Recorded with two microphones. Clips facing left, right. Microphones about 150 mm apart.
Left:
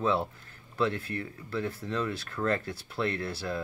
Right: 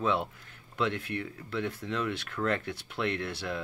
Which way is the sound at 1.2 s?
10° left (ahead or behind).